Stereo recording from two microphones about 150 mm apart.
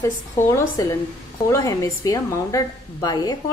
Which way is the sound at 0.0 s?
20° left (ahead or behind).